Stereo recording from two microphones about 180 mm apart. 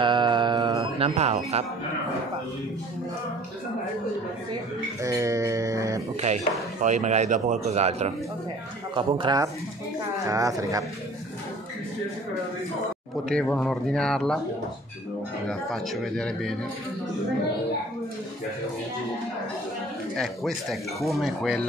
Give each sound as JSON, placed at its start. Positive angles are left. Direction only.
{"t": 0.0, "sound": "music", "side_deg": -25}
{"t": 5.0, "sound": "a sound", "side_deg": -15}
{"t": 6.8, "sound": "speech", "side_deg": -40}
{"t": 8.9, "sound": "speech", "side_deg": -25}
{"t": 13.3, "sound": "speech", "side_deg": 5}
{"t": 15.4, "sound": "speech", "side_deg": 0}
{"t": 20.2, "sound": "speech", "side_deg": 0}